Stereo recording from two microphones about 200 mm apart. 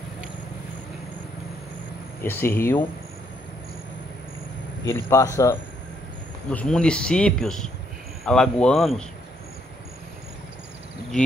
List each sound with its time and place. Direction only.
2.2 s speech: 10° left (ahead or behind)
4.8 s speech: 15° left (ahead or behind)
6.5 s speech: 5° left (ahead or behind)